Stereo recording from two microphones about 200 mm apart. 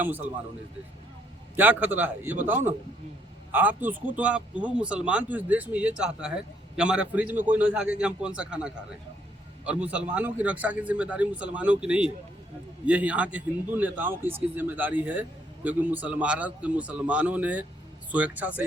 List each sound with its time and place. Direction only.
0.0 s a man's voice: 10° right (ahead or behind)
1.5 s a man's voice: 10° right (ahead or behind)